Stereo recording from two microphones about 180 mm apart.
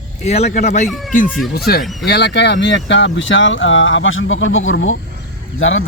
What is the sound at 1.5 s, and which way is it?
Speech, 60° left (ahead or behind).